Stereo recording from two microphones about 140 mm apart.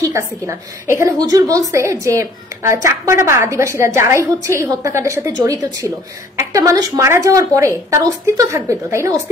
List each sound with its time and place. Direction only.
0.1 s a woman's voice: 20° right (ahead or behind)